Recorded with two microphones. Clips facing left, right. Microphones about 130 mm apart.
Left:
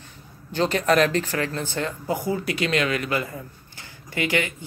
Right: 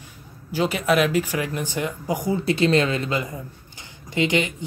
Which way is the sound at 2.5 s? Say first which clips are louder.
Right 7 dB; 30° right (ahead or behind).